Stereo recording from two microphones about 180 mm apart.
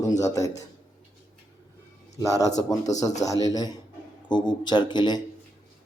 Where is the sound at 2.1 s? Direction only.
20° left (ahead or behind).